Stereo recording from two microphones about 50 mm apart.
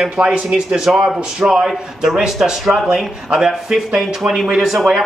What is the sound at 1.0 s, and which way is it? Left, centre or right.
Speech, centre.